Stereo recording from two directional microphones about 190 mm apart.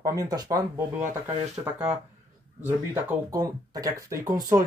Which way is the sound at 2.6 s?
10° right (ahead or behind).